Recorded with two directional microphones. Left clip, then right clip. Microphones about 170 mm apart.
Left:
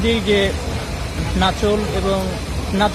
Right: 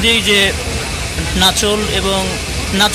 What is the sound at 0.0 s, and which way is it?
Speech, 15° left (ahead or behind).